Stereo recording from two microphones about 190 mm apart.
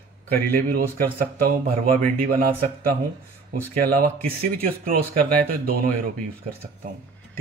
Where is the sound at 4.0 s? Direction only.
50° right (ahead or behind).